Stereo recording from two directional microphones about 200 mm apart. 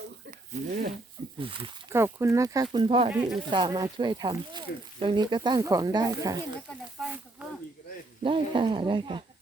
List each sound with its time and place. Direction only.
0.3 s a sound: 40° right (ahead or behind)
1.4 s speech: 25° right (ahead or behind)
1.9 s speech: 15° right (ahead or behind)
7.0 s snake: 5° right (ahead or behind)
8.2 s speech: 25° right (ahead or behind)